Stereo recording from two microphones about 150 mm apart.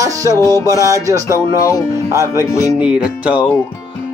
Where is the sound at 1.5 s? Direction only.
20° left (ahead or behind).